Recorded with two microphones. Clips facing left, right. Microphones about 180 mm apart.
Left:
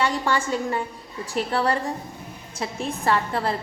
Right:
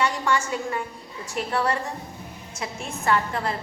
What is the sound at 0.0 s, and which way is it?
A woman's voice, 30° left (ahead or behind).